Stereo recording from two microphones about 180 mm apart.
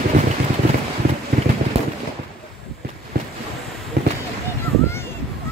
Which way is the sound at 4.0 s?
65° right (ahead or behind).